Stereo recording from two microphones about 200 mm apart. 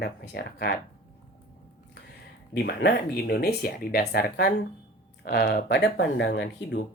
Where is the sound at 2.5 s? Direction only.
55° left (ahead or behind).